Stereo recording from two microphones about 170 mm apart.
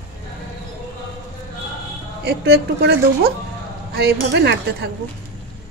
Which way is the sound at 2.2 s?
75° right (ahead or behind).